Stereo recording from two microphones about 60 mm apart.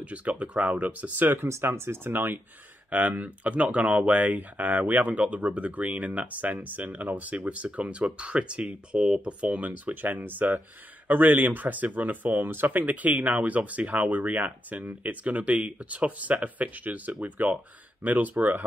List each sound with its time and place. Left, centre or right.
0.0 s speech: right
1.5 s speech: right
2.9 s speech: right